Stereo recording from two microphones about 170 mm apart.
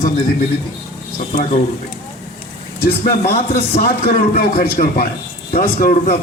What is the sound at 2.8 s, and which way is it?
A man's voice, 60° left (ahead or behind).